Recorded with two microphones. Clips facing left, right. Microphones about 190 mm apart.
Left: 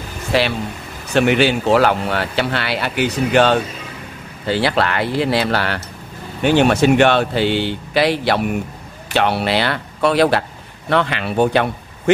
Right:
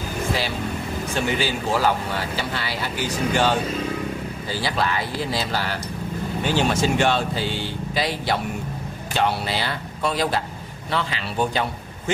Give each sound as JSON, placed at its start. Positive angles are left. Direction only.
{"t": 0.3, "sound": "speech", "side_deg": 70}